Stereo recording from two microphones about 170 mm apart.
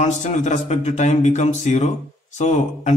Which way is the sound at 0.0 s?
45° left (ahead or behind).